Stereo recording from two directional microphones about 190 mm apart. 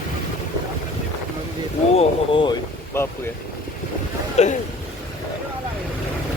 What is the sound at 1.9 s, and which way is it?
Speech, 25° left (ahead or behind).